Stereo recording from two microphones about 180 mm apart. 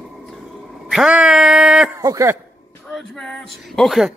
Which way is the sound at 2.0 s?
15° right (ahead or behind).